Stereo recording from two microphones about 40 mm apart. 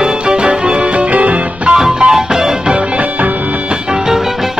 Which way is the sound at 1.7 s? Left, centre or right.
Centre.